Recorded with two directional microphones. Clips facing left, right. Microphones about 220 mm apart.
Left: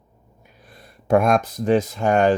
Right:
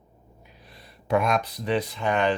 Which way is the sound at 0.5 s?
50° left (ahead or behind).